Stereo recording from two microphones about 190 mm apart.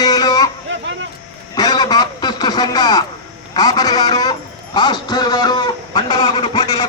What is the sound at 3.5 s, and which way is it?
Speech, 20° left (ahead or behind).